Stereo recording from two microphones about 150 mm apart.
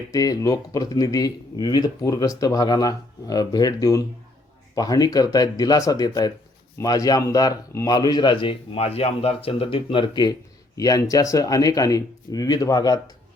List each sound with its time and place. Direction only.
0.1 s a man's voice: 25° left (ahead or behind)